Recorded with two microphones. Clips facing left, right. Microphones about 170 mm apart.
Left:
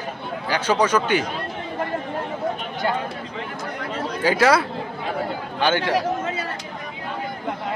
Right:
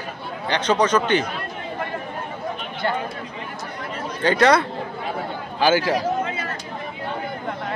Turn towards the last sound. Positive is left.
turn(degrees=35)  # may be behind; listen again after turning